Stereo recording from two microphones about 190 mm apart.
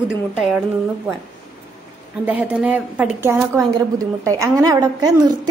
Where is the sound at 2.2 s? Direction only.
5° right (ahead or behind).